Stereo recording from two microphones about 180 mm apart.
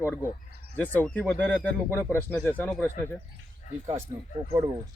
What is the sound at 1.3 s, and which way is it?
Speech, 10° left (ahead or behind).